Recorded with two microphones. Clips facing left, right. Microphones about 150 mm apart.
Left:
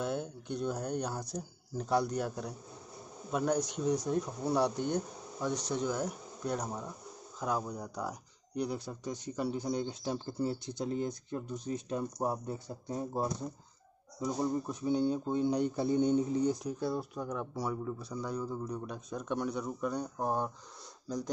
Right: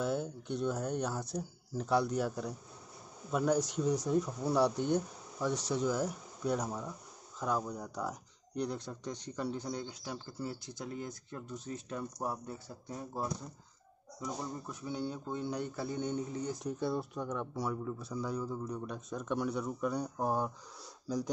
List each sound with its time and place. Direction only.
0.0 s speech: 5° right (ahead or behind); by 16.5 s 20° left (ahead or behind)
16.6 s speech: centre (ahead or behind)